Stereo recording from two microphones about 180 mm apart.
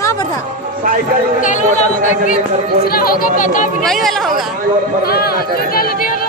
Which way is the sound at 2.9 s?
55° left (ahead or behind).